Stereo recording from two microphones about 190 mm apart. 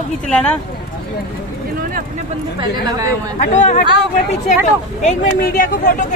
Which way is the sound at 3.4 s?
40° left (ahead or behind).